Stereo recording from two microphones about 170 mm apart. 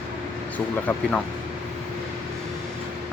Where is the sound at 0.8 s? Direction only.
10° left (ahead or behind).